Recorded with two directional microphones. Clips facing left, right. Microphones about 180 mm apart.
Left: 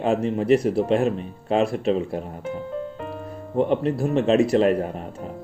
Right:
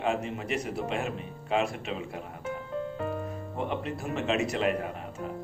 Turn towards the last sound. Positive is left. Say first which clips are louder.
# left 9 dB
turn(degrees=40)  # may be behind; listen again after turning